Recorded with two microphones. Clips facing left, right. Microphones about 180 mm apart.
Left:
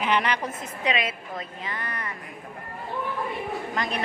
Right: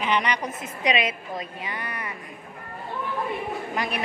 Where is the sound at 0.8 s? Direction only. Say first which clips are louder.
Right 3 dB; 15° right (ahead or behind).